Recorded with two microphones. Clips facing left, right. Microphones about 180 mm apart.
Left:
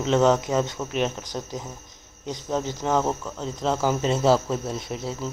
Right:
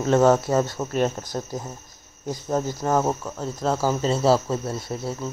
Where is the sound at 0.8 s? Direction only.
15° right (ahead or behind).